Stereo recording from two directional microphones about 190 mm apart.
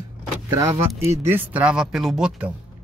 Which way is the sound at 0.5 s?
20° right (ahead or behind).